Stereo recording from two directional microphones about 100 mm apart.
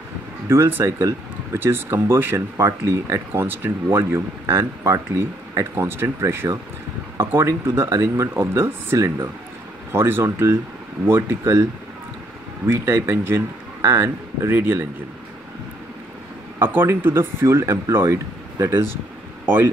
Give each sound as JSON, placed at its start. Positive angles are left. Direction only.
{"t": 0.5, "sound": "speech", "side_deg": -25}
{"t": 12.6, "sound": "speech", "side_deg": -25}
{"t": 16.5, "sound": "speech", "side_deg": -25}